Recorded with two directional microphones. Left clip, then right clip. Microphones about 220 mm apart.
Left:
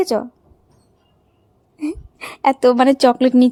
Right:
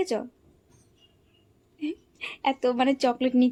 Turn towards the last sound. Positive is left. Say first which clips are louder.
# left 11 dB
turn(degrees=40)  # may be behind; listen again after turning